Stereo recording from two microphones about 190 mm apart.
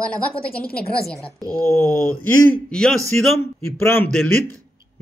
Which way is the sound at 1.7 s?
10° left (ahead or behind).